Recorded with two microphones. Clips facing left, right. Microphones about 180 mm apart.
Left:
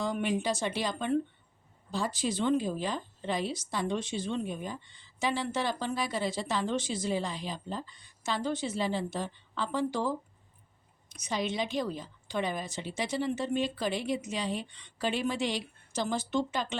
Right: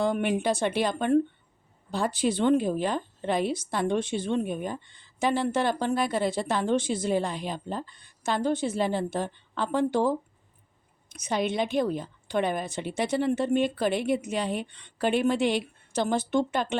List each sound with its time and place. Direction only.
0.0 s a woman's voice: 60° right (ahead or behind)